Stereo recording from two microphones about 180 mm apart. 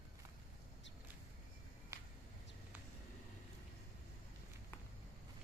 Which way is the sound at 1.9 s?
15° right (ahead or behind).